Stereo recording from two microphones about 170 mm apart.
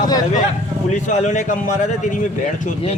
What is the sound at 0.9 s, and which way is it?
A man's voice, 45° left (ahead or behind).